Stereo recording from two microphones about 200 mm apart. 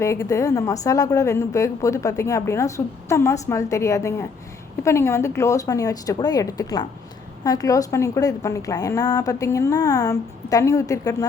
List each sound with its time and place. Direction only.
0.0 s a woman's voice: 15° left (ahead or behind)